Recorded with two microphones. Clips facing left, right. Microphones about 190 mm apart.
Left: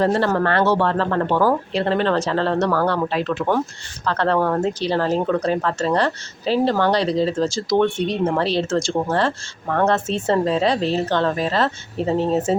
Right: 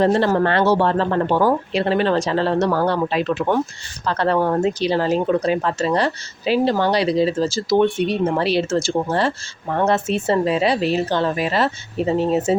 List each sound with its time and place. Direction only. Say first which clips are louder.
0.0 s speech: right 2 dB; 20° right (ahead or behind)